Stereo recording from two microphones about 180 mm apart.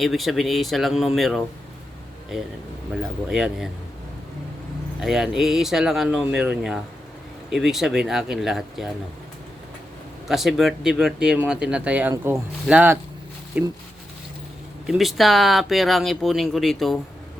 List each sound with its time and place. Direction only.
0.0 s speech: centre (ahead or behind)
4.9 s speech: centre (ahead or behind)
10.2 s speech: centre (ahead or behind)
14.8 s speech: centre (ahead or behind)